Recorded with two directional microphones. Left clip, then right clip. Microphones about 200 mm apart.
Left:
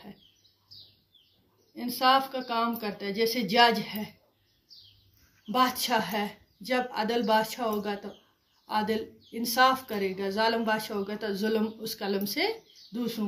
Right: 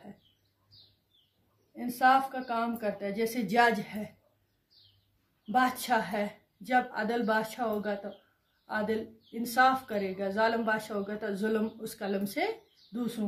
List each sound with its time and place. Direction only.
1.8 s speech: 15° right (ahead or behind)
5.5 s speech: 15° right (ahead or behind)